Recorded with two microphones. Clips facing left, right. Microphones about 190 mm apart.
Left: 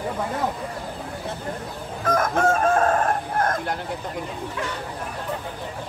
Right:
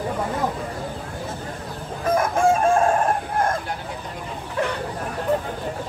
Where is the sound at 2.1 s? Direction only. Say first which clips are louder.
Right 2 dB; 10° right (ahead or behind).